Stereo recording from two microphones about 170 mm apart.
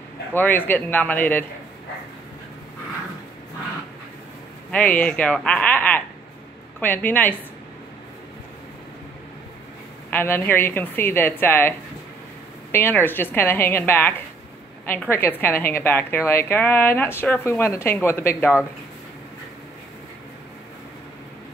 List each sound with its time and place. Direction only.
0.3 s a woman's voice: 10° left (ahead or behind)
4.6 s a woman's voice: 10° left (ahead or behind)
10.1 s a woman's voice: 15° left (ahead or behind)
12.7 s a woman's voice: 10° left (ahead or behind)